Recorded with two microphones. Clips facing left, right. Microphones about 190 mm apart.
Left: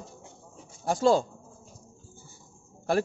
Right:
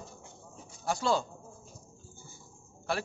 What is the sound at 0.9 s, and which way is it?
Speech, 45° left (ahead or behind).